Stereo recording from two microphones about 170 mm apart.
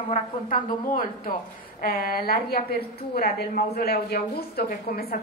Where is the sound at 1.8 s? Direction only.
60° left (ahead or behind).